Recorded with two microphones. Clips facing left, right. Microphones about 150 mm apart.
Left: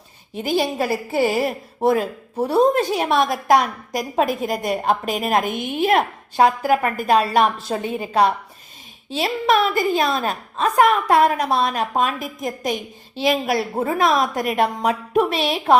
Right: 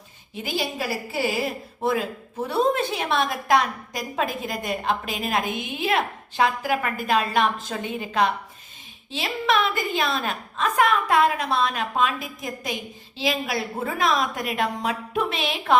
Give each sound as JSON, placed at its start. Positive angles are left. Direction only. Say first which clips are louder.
{"t": 0.4, "sound": "a woman's voice", "louder": "left 7 dB", "side_deg": 45}